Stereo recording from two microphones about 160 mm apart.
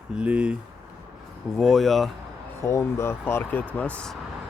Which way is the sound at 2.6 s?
15° left (ahead or behind).